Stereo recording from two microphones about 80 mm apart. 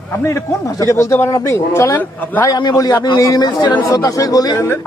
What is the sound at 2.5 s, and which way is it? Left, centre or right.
Speech, left.